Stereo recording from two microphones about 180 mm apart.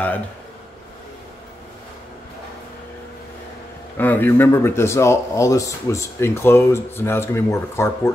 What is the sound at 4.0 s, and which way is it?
Speech, 10° left (ahead or behind).